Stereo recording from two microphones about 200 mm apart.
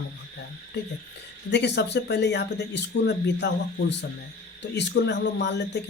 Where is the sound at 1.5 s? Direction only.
60° left (ahead or behind).